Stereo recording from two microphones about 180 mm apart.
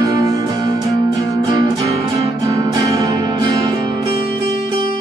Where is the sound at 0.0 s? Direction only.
20° right (ahead or behind).